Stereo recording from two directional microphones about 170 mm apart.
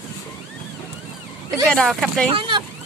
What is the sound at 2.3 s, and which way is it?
Speech, 30° right (ahead or behind).